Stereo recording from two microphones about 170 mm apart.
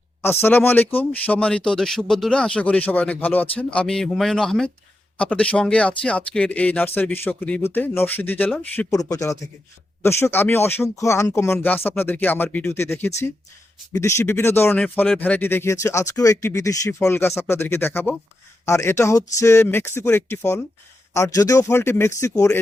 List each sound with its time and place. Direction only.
0.4 s speech: 10° left (ahead or behind)
8.9 s speech: 20° left (ahead or behind)